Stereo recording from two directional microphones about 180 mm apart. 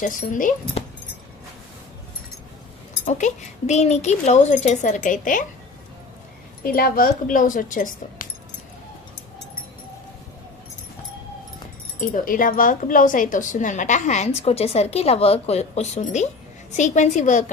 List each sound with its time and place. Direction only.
0.0 s speech: 50° left (ahead or behind)
0.6 s speech: 30° left (ahead or behind)
3.1 s a woman's voice: 40° left (ahead or behind)
6.7 s speech: 55° left (ahead or behind)
11.9 s a woman's voice: 50° left (ahead or behind)